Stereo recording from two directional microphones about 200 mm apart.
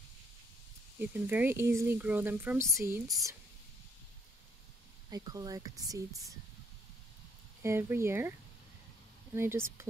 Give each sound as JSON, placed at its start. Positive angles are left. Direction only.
{"t": 0.9, "sound": "speech", "side_deg": -10}
{"t": 5.1, "sound": "speech", "side_deg": -20}
{"t": 7.6, "sound": "speech", "side_deg": -10}